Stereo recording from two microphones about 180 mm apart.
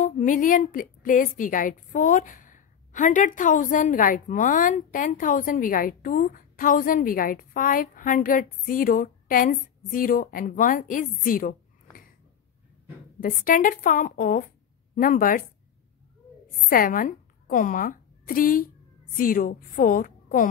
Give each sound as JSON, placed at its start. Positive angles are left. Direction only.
{"t": 0.0, "sound": "a woman's voice", "side_deg": 45}
{"t": 13.4, "sound": "a woman's voice", "side_deg": 50}
{"t": 16.6, "sound": "a woman's voice", "side_deg": 50}